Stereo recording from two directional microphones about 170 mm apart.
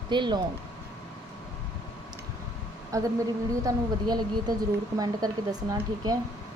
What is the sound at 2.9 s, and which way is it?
Speech, 20° right (ahead or behind).